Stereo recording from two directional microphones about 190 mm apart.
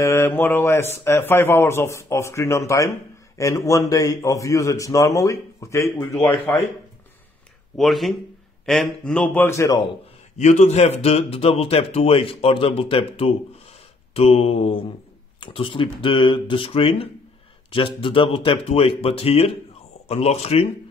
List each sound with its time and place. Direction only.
0.0 s a man's voice: 15° left (ahead or behind)
7.7 s a man's voice: centre (ahead or behind); by 9.8 s 15° left (ahead or behind)
10.3 s a man's voice: 35° left (ahead or behind)